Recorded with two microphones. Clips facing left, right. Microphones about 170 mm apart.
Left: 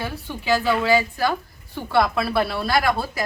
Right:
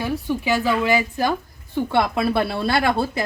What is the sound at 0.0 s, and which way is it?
A woman's voice, 15° right (ahead or behind).